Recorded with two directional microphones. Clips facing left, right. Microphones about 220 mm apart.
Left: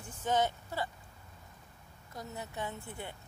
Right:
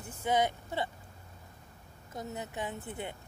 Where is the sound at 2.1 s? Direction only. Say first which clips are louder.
Right 3 dB; 20° right (ahead or behind).